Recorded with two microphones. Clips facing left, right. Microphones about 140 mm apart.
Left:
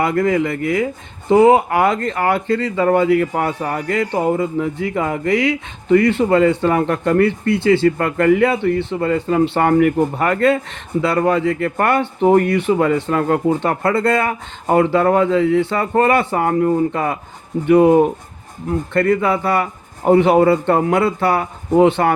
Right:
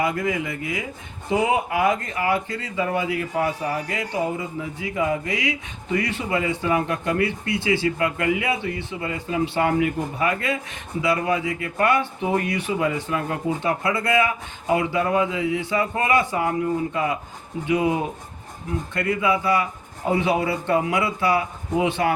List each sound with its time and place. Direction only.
0.0 s speech: 65° left (ahead or behind)